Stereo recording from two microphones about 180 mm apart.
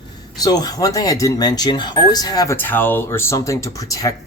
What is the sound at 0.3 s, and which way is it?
Speech, 20° left (ahead or behind).